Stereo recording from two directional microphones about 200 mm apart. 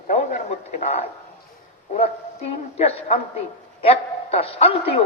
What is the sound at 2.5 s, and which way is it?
A man's voice, 30° left (ahead or behind).